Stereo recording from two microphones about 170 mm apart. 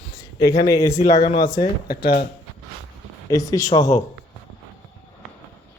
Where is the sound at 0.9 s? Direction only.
45° left (ahead or behind).